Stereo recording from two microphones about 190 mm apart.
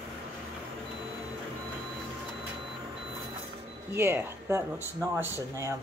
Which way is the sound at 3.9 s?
10° right (ahead or behind).